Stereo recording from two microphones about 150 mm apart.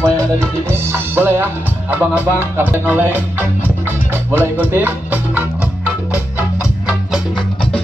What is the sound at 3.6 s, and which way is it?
Music, 15° right (ahead or behind).